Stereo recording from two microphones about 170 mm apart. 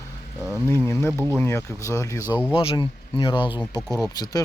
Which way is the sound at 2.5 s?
30° left (ahead or behind).